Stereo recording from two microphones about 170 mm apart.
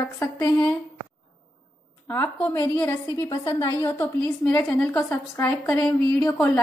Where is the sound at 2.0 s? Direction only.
10° left (ahead or behind).